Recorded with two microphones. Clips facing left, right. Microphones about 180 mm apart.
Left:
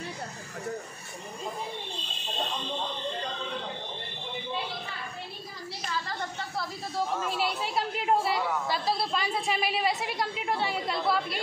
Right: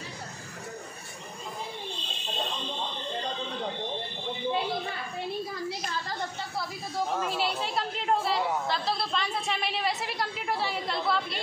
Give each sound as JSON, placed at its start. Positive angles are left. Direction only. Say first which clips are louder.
{"t": 7.6, "sound": "chatter", "louder": "left 1 dB", "side_deg": 5}